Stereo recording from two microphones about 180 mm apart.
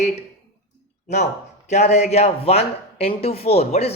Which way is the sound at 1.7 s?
40° left (ahead or behind).